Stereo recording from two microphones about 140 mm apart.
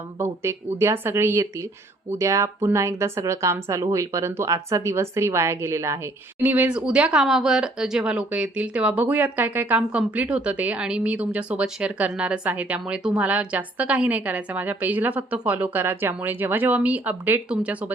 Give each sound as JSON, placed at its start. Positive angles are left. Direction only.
{"t": 0.2, "sound": "speech", "side_deg": -15}